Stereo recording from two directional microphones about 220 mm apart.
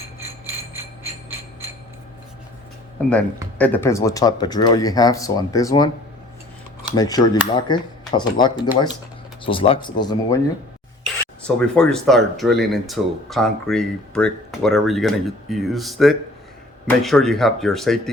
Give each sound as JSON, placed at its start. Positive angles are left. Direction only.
{"t": 3.0, "sound": "speech", "side_deg": 10}
{"t": 11.0, "sound": "speech", "side_deg": 5}